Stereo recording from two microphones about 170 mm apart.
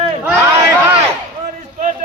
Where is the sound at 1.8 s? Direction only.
45° right (ahead or behind).